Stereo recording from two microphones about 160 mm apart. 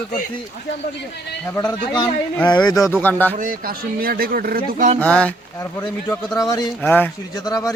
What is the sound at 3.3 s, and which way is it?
Speech, 60° right (ahead or behind).